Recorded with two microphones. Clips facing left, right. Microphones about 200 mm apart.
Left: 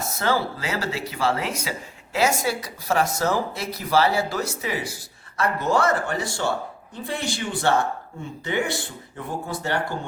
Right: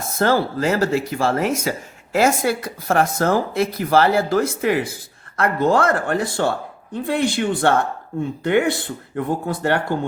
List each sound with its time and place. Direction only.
0.0 s speech: 50° right (ahead or behind)